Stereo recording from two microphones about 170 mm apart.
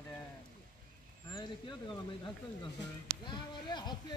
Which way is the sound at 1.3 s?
20° left (ahead or behind).